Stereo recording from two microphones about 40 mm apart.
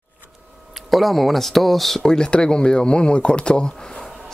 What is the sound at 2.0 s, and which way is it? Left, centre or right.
Speech, centre.